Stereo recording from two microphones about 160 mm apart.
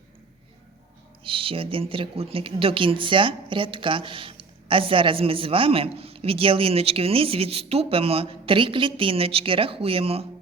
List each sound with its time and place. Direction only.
1.2 s speech: 35° right (ahead or behind)